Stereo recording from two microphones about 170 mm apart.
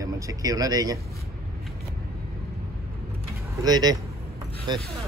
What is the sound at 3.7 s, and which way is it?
Speech, 20° right (ahead or behind).